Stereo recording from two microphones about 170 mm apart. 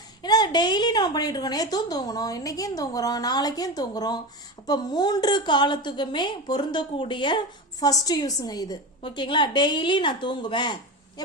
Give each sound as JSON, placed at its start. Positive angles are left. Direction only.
{"t": 0.2, "sound": "a woman's voice", "side_deg": 25}